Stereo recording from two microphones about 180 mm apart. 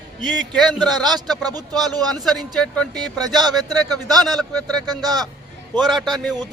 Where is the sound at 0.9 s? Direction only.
25° right (ahead or behind).